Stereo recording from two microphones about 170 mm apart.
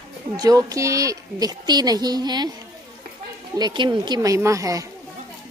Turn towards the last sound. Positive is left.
turn(degrees=-20)  # may be behind; listen again after turning